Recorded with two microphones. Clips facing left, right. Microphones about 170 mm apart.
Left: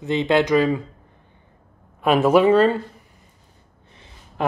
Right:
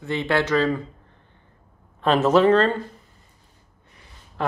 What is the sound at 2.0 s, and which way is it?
Speech, 10° left (ahead or behind).